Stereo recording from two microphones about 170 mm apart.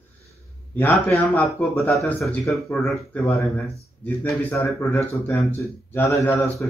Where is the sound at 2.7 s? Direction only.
15° left (ahead or behind).